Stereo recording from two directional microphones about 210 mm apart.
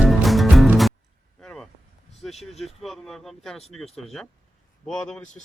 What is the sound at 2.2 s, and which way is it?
A man's voice, centre (ahead or behind).